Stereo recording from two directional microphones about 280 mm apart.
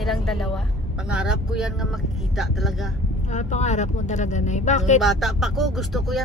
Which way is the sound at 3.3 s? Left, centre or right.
Left.